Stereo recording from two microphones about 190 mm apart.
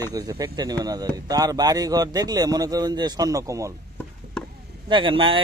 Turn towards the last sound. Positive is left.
turn(degrees=-25)  # may be behind; listen again after turning